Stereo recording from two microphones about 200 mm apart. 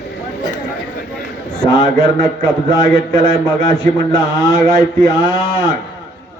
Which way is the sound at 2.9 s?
20° left (ahead or behind).